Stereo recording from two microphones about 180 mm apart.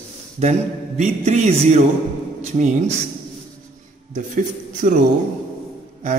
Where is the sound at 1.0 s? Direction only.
40° right (ahead or behind).